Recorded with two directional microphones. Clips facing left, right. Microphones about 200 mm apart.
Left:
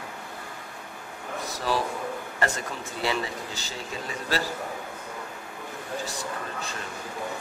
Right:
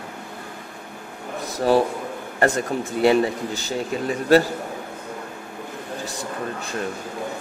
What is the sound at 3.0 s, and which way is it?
Speech, 55° right (ahead or behind).